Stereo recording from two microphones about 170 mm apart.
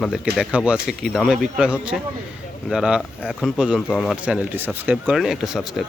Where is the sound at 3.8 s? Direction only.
5° left (ahead or behind).